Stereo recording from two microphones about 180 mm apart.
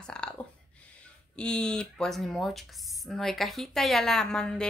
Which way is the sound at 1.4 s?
5° left (ahead or behind).